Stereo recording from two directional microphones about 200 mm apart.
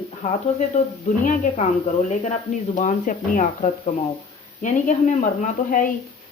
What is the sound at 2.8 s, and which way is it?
Speech, 40° left (ahead or behind).